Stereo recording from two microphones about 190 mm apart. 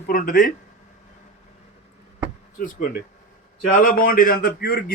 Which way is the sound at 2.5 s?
45° left (ahead or behind).